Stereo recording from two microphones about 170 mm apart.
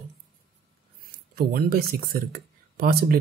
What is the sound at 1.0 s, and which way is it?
Speech, 60° right (ahead or behind).